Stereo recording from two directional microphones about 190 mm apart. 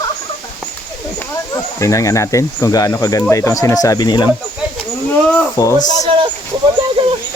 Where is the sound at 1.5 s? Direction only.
15° left (ahead or behind).